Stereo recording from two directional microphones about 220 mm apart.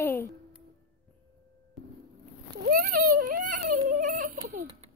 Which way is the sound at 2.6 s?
40° right (ahead or behind).